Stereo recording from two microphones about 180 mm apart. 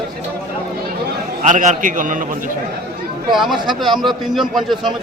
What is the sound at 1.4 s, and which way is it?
A man's voice, 45° right (ahead or behind).